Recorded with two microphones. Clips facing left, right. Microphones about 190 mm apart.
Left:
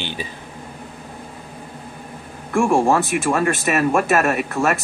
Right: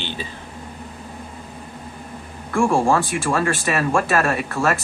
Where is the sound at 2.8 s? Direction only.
20° left (ahead or behind).